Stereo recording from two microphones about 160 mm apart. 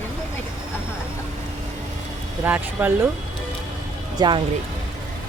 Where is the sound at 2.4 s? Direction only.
10° right (ahead or behind).